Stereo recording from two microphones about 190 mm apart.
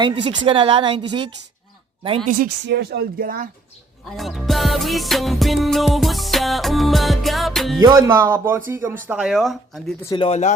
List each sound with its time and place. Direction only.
0.0 s a woman's voice: 25° right (ahead or behind)
2.4 s speech: 60° right (ahead or behind)
4.1 s music: centre (ahead or behind)
7.8 s speech: 20° right (ahead or behind)
9.0 s music: 5° right (ahead or behind)
10.2 s speech: 35° left (ahead or behind)